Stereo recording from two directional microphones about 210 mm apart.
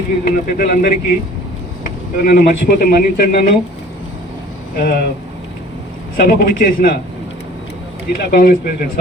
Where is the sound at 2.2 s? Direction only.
50° left (ahead or behind).